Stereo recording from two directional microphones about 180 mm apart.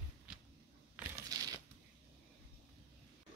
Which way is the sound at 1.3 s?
20° right (ahead or behind).